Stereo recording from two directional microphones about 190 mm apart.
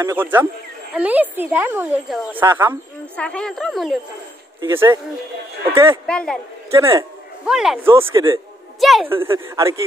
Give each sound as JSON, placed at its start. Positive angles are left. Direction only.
{"t": 0.0, "sound": "speech", "side_deg": -10}
{"t": 3.2, "sound": "speech", "side_deg": 5}
{"t": 4.6, "sound": "speech", "side_deg": -15}
{"t": 6.0, "sound": "speech", "side_deg": 5}
{"t": 6.7, "sound": "speech", "side_deg": -15}
{"t": 7.4, "sound": "speech", "side_deg": 0}
{"t": 8.1, "sound": "a man's voice", "side_deg": -20}
{"t": 8.7, "sound": "a woman's voice", "side_deg": 0}
{"t": 9.1, "sound": "speech", "side_deg": -15}